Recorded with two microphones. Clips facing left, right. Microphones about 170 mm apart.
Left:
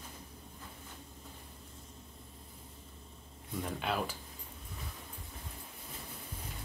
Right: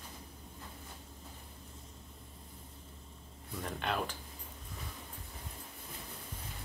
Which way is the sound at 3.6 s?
5° left (ahead or behind).